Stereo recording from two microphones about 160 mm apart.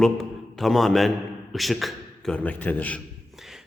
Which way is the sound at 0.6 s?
Centre (ahead or behind).